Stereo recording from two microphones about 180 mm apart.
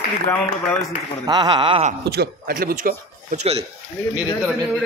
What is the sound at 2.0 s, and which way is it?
Speech, 60° right (ahead or behind).